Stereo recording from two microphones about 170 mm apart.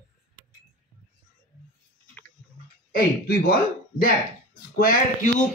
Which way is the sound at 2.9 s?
60° left (ahead or behind).